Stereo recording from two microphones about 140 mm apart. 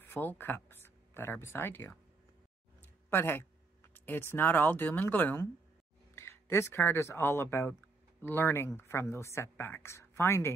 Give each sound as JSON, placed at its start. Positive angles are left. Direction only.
{"t": 0.0, "sound": "speech", "side_deg": 15}